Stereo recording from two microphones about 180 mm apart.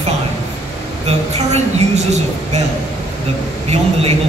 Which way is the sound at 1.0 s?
40° right (ahead or behind).